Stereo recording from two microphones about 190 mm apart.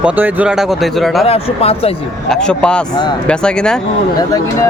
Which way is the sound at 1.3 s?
30° left (ahead or behind).